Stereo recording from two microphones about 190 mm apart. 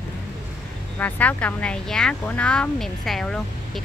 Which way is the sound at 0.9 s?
10° left (ahead or behind).